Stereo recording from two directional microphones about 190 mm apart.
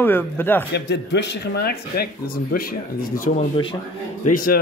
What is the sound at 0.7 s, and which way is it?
Speech, 65° left (ahead or behind).